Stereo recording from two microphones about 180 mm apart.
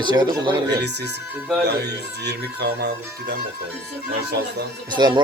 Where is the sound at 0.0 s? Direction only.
25° right (ahead or behind).